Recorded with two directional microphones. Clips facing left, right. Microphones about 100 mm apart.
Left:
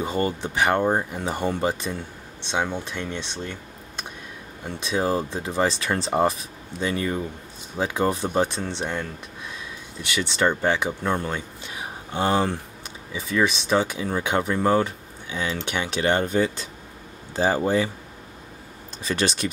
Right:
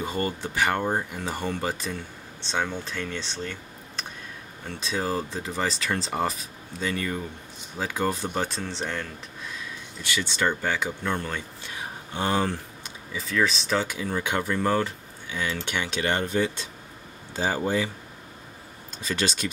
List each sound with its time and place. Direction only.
0.0 s speech: 20° left (ahead or behind)
16.0 s speech: 30° left (ahead or behind)
17.4 s speech: 45° left (ahead or behind)